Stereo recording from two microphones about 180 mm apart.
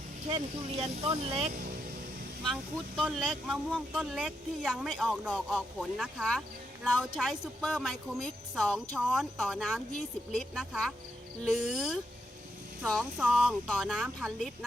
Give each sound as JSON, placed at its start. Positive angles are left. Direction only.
{"t": 0.8, "sound": "speech", "side_deg": -30}
{"t": 2.4, "sound": "speech", "side_deg": 0}